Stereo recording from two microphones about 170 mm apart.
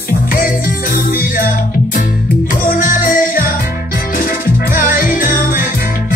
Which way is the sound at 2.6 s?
55° left (ahead or behind).